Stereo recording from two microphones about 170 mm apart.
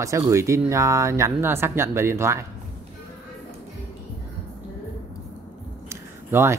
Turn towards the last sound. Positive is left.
turn(degrees=-15)  # may be behind; listen again after turning